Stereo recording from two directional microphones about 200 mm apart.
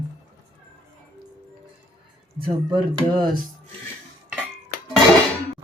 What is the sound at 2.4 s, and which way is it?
Speech, 25° right (ahead or behind).